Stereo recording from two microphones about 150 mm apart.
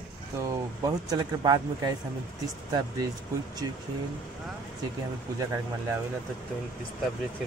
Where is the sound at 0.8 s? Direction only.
25° right (ahead or behind).